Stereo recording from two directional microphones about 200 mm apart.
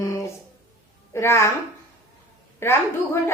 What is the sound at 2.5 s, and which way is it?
Speech, 10° left (ahead or behind).